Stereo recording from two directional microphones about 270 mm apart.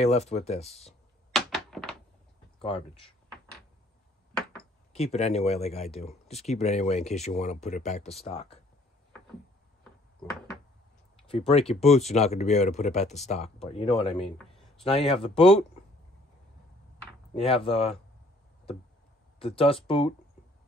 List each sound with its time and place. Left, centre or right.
0.0 s speech: left
1.3 s thunk: centre
2.6 s speech: centre
4.9 s speech: left
11.2 s speech: left
14.2 s a sound: centre
14.8 s speech: left
17.3 s speech: left
19.4 s speech: left